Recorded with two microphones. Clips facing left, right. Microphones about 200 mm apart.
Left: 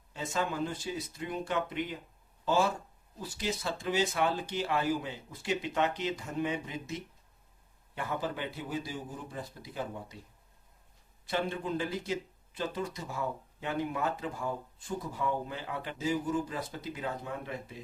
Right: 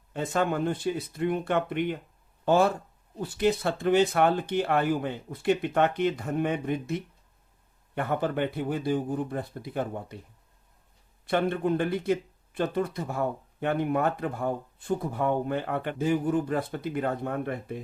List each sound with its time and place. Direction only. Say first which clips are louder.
0.1 s speech: right 7 dB; 55° right (ahead or behind)
11.3 s speech: right 7 dB; 60° right (ahead or behind)